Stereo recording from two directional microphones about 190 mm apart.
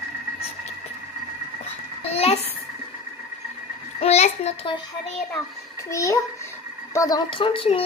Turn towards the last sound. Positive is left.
turn(degrees=25)  # may be behind; listen again after turning